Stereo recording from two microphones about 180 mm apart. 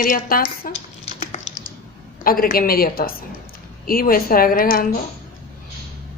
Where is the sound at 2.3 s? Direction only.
55° left (ahead or behind).